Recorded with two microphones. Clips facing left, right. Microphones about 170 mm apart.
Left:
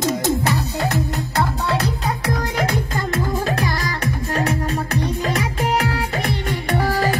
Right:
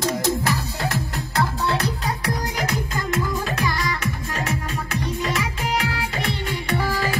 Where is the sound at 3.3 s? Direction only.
45° left (ahead or behind).